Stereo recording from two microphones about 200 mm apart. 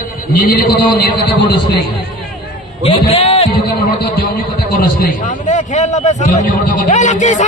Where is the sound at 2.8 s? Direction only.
30° left (ahead or behind).